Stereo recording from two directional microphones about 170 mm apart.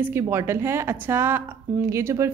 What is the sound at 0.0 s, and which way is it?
A woman's voice, 15° right (ahead or behind).